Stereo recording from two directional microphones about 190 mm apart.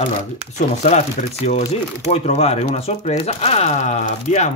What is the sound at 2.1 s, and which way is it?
Speech, 35° left (ahead or behind).